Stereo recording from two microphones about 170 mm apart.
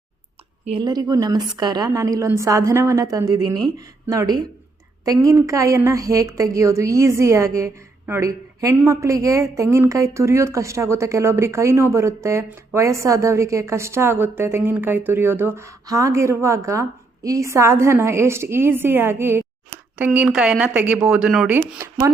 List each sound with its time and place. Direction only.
0.6 s a woman's voice: 30° right (ahead or behind); by 22.1 s 15° right (ahead or behind)